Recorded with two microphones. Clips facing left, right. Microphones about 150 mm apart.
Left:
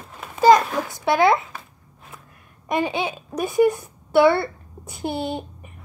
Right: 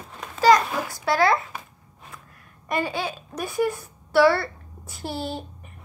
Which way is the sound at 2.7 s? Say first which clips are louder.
Left 3 dB; 20° left (ahead or behind).